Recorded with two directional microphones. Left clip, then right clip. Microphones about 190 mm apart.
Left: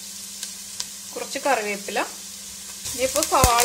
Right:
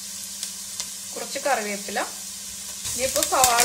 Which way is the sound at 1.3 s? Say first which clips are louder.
Left 2 dB; 40° left (ahead or behind).